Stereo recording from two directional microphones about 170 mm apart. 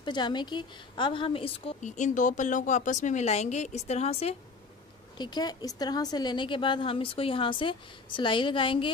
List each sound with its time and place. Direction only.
0.0 s a woman's voice: 25° left (ahead or behind)
1.8 s speech: 45° left (ahead or behind)
5.1 s a woman's voice: 25° left (ahead or behind)